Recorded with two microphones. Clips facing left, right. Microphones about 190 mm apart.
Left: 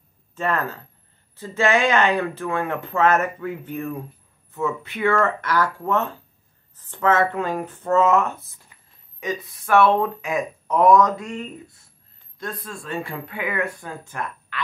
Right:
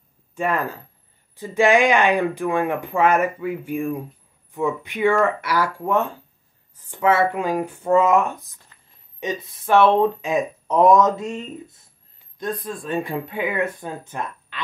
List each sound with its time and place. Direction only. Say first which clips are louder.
0.4 s speech: right 1 dB; 10° right (ahead or behind)